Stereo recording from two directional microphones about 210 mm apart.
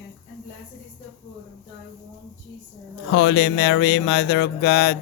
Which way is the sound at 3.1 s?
60° left (ahead or behind).